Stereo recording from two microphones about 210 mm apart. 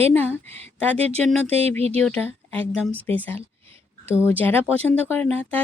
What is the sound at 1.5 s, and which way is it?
Speech, 30° right (ahead or behind).